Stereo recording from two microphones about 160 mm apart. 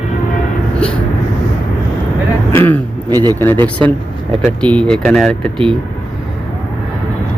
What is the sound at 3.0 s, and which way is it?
Speech, 25° right (ahead or behind).